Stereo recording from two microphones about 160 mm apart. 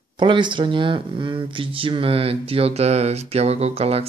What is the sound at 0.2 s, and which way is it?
Speech, 30° right (ahead or behind).